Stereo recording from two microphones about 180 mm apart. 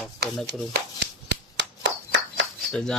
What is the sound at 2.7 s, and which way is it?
Speech, 5° left (ahead or behind).